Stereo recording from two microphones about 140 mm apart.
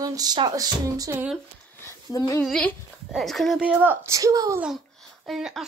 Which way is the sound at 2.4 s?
Centre (ahead or behind).